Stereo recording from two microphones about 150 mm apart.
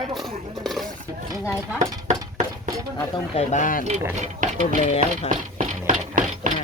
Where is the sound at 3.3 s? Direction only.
55° left (ahead or behind).